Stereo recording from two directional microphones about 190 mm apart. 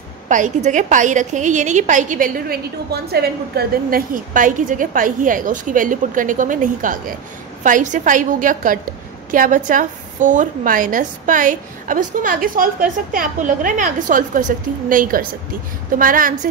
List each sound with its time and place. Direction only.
0.3 s a woman's voice: 40° right (ahead or behind)